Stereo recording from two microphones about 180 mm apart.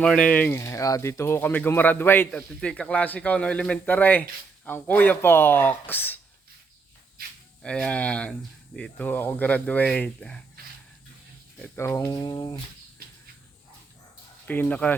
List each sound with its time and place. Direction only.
0.0 s speech: 5° left (ahead or behind)
7.6 s speech: 5° left (ahead or behind)
11.6 s speech: 10° left (ahead or behind)
14.4 s speech: 10° left (ahead or behind)